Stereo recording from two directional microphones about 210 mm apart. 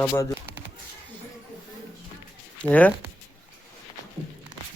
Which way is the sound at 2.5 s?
5° left (ahead or behind).